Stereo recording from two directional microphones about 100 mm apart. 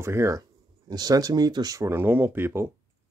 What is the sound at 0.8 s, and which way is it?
Speech, 40° right (ahead or behind).